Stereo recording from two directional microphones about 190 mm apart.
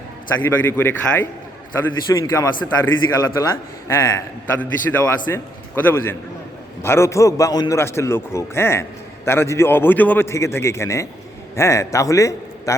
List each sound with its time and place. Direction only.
0.4 s a man's voice: 10° left (ahead or behind)